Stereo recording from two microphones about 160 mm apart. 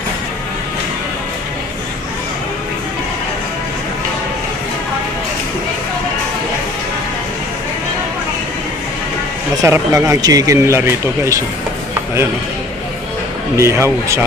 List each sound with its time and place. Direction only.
9.6 s speech: 20° right (ahead or behind)
13.6 s speech: 15° right (ahead or behind)